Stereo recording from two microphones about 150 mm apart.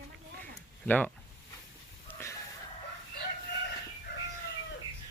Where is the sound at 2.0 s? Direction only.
20° left (ahead or behind).